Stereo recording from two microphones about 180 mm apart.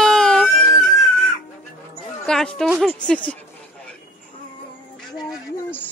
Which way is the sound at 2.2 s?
5° left (ahead or behind).